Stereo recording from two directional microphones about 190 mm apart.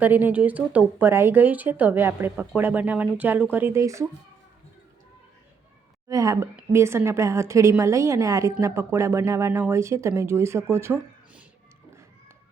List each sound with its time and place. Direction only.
0.0 s speech: 10° right (ahead or behind)
6.1 s speech: 15° right (ahead or behind)